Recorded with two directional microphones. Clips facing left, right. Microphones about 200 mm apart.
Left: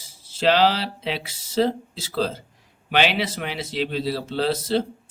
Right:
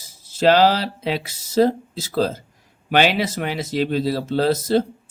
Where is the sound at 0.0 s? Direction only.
45° right (ahead or behind).